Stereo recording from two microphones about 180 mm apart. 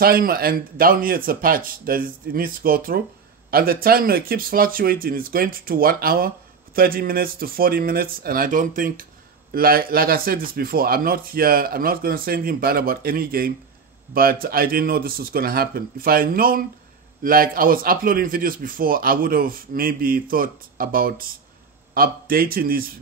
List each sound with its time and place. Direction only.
0.0 s a man's voice: 55° right (ahead or behind)